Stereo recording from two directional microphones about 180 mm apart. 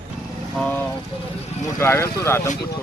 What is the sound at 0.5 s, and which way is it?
Speech, 10° left (ahead or behind).